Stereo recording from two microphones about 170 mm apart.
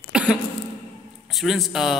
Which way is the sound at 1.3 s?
Centre (ahead or behind).